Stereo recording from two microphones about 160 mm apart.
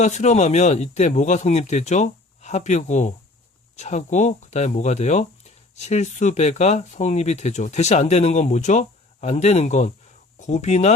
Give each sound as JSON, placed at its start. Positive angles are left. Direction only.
{"t": 0.0, "sound": "speech", "side_deg": 45}